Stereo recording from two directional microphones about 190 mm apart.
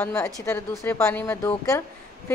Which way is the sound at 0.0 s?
10° left (ahead or behind).